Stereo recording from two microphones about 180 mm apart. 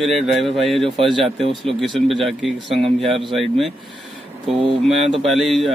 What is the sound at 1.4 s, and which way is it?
Speech, 30° right (ahead or behind).